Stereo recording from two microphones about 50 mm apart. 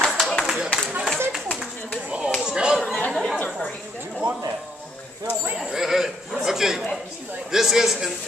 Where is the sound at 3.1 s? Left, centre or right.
Centre.